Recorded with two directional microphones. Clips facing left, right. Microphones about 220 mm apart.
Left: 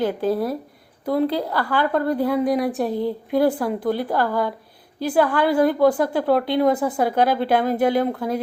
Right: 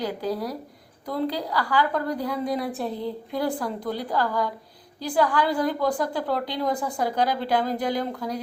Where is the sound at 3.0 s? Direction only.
55° left (ahead or behind).